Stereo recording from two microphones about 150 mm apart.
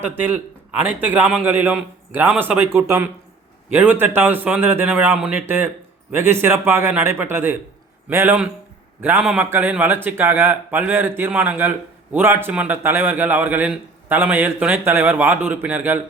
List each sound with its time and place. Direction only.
0.0 s a man's voice: 15° right (ahead or behind)